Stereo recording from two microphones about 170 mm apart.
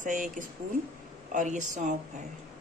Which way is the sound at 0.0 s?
50° right (ahead or behind).